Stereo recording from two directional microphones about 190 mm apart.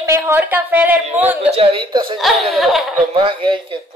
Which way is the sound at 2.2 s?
Centre (ahead or behind).